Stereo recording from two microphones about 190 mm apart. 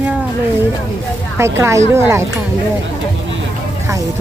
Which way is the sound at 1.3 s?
15° right (ahead or behind).